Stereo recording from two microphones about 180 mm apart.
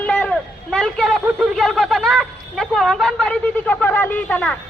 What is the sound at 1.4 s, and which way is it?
Speech, centre (ahead or behind).